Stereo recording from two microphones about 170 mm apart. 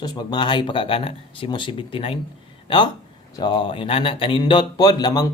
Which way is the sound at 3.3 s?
30° left (ahead or behind).